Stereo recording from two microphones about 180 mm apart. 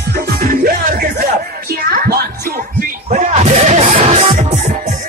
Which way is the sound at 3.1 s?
40° right (ahead or behind).